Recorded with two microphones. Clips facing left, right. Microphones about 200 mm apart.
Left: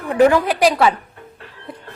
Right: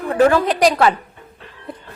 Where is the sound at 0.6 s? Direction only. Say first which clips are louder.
Even; centre (ahead or behind).